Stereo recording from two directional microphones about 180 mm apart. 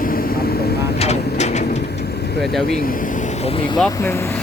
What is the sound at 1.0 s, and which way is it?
Vehicle, 40° left (ahead or behind).